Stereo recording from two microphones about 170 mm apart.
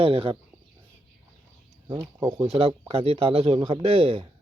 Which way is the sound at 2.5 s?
35° right (ahead or behind).